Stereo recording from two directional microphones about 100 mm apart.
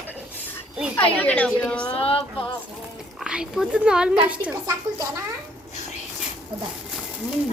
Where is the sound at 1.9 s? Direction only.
75° left (ahead or behind).